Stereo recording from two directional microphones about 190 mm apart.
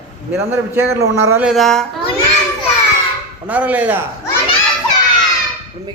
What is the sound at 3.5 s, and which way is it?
Speech, 10° right (ahead or behind).